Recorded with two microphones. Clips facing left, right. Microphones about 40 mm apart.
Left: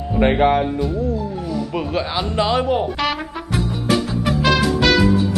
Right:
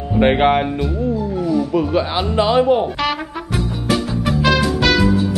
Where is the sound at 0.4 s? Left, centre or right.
Right.